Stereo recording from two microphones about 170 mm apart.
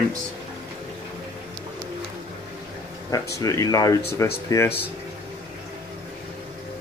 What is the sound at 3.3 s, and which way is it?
Speech, 20° left (ahead or behind).